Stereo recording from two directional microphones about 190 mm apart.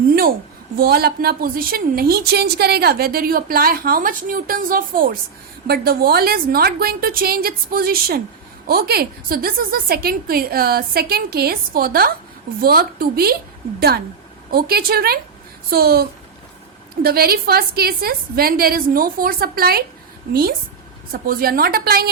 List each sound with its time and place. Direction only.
0.8 s a woman's voice: 55° right (ahead or behind)